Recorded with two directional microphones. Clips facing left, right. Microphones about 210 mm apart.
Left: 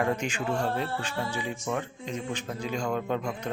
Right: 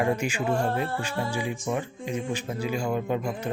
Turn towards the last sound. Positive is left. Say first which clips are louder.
# right 2 dB
turn(degrees=-10)  # may be behind; listen again after turning